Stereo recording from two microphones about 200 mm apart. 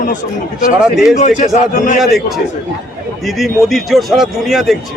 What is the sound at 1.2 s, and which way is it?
Speech, 35° left (ahead or behind).